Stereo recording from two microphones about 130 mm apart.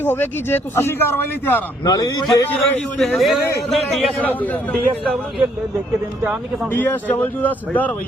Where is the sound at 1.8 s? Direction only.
30° left (ahead or behind).